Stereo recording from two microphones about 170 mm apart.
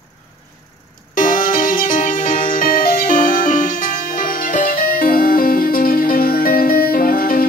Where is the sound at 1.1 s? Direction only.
55° left (ahead or behind).